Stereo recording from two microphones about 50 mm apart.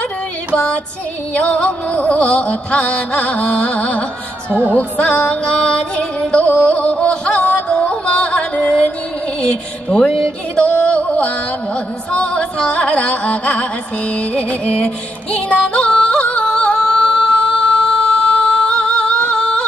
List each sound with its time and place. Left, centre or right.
1.3 s music: left
4.5 s speech: right
4.7 s music: left
9.4 s speech: centre
10.5 s music: left
16.4 s singing: centre
19.1 s yodeling: left